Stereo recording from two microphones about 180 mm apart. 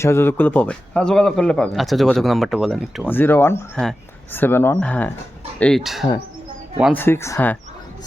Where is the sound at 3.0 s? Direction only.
10° left (ahead or behind).